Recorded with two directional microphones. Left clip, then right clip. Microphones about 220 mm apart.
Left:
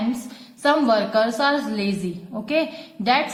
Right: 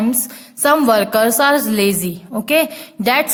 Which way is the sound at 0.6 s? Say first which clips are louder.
Right 5 dB; 45° right (ahead or behind).